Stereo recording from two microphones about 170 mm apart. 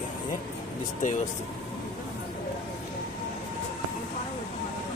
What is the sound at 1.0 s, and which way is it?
Speech, 45° left (ahead or behind).